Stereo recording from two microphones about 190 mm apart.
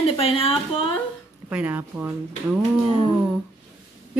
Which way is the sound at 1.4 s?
10° right (ahead or behind).